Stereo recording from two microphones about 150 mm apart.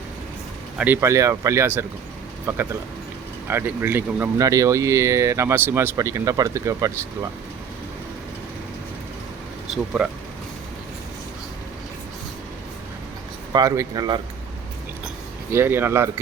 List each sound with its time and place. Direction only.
1.0 s speech: 20° right (ahead or behind)
9.7 s vehicle: centre (ahead or behind)
13.5 s speech: 25° right (ahead or behind)
15.5 s speech: 15° right (ahead or behind)